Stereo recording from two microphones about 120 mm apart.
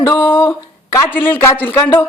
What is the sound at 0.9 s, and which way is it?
Speech, 15° left (ahead or behind).